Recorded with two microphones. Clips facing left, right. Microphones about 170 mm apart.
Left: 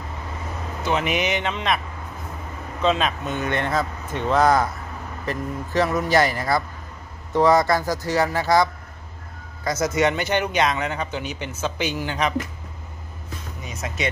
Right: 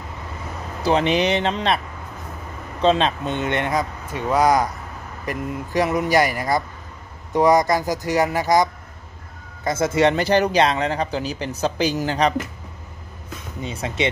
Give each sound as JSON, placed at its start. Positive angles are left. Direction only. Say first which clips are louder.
{"t": 0.8, "sound": "a man's voice", "louder": "right 5 dB", "side_deg": -30}
{"t": 2.8, "sound": "speech", "louder": "right 3 dB", "side_deg": -30}
{"t": 9.7, "sound": "a man's voice", "louder": "right 3 dB", "side_deg": -30}
{"t": 13.6, "sound": "speech", "louder": "right 6 dB", "side_deg": -30}